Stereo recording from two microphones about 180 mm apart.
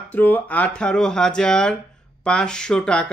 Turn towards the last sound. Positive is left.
turn(degrees=5)  # may be behind; listen again after turning